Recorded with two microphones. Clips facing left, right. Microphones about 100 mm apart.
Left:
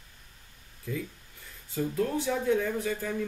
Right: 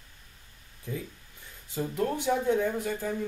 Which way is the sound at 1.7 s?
20° right (ahead or behind).